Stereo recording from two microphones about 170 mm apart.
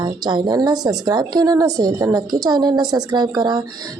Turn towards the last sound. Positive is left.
turn(degrees=-25)  # may be behind; listen again after turning